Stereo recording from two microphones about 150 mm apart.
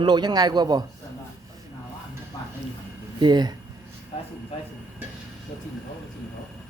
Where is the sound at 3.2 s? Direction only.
30° right (ahead or behind).